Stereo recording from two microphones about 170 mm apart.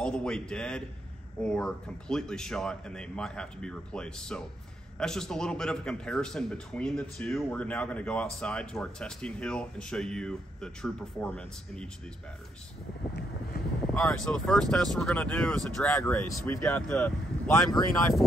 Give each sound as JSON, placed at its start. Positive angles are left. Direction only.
{"t": 0.0, "sound": "a man's voice", "side_deg": 5}
{"t": 13.9, "sound": "a man's voice", "side_deg": 5}
{"t": 15.8, "sound": "speech", "side_deg": 15}
{"t": 16.6, "sound": "a man's voice", "side_deg": 5}
{"t": 17.5, "sound": "speech", "side_deg": 20}